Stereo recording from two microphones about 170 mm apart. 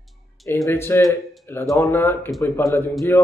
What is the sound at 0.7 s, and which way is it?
Speech, 15° left (ahead or behind).